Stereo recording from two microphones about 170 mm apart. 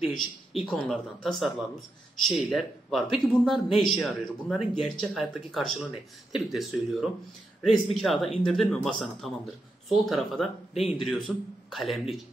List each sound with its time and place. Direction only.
0.1 s speech: centre (ahead or behind)